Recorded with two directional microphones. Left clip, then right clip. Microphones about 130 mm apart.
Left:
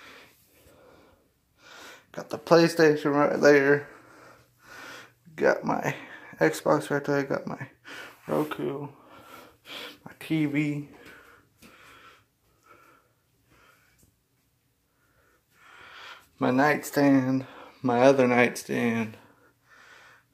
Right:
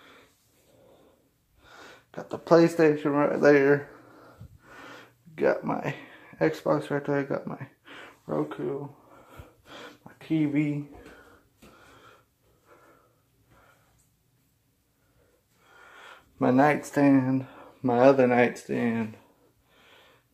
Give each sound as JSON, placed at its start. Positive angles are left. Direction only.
{"t": 0.0, "sound": "wheeze", "side_deg": 15}
{"t": 1.6, "sound": "a sound", "side_deg": 0}
{"t": 5.4, "sound": "speech", "side_deg": 5}
{"t": 8.3, "sound": "speech", "side_deg": 20}
{"t": 9.3, "sound": "snort", "side_deg": 0}
{"t": 10.0, "sound": "a sound", "side_deg": 15}
{"t": 10.5, "sound": "speech", "side_deg": -15}
{"t": 15.6, "sound": "a sound", "side_deg": -10}
{"t": 16.5, "sound": "speech", "side_deg": -20}
{"t": 16.9, "sound": "speech", "side_deg": -5}